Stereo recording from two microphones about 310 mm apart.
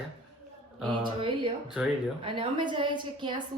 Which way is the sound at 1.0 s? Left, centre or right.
Centre.